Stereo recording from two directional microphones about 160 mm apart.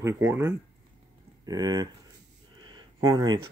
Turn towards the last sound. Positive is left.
turn(degrees=-30)  # may be behind; listen again after turning